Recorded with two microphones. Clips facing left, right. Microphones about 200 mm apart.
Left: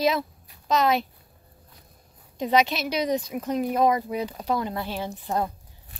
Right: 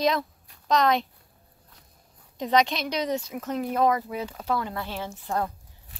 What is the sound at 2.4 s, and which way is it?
Speech, 10° left (ahead or behind).